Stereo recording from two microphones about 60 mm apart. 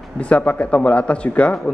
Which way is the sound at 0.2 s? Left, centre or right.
Left.